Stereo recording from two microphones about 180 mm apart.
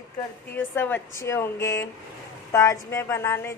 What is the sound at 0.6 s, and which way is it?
A woman's voice, 10° left (ahead or behind).